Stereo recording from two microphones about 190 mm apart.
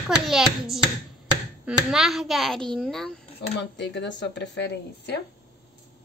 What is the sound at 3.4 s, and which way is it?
Speech, 65° left (ahead or behind).